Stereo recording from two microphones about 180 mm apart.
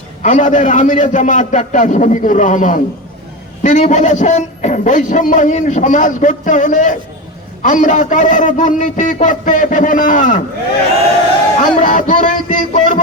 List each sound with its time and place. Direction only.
0.2 s a man's voice: 45° left (ahead or behind)
11.6 s a man's voice: 45° left (ahead or behind)